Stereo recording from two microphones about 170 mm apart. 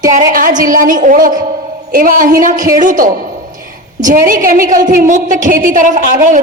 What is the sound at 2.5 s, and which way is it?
Speech, 20° right (ahead or behind).